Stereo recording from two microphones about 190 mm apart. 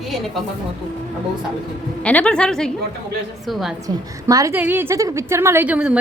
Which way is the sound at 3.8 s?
20° right (ahead or behind).